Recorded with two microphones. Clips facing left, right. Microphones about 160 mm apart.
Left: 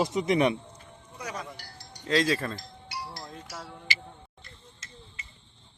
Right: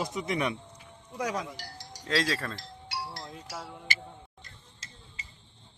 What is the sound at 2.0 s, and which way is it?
Speech, centre (ahead or behind).